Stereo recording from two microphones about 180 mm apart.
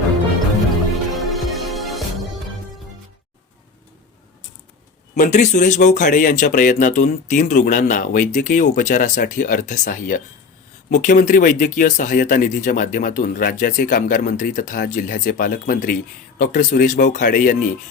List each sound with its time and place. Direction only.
1.1 s music: centre (ahead or behind)
5.1 s speech: 45° left (ahead or behind)